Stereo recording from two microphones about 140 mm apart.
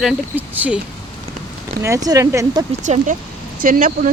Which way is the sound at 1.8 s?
25° right (ahead or behind).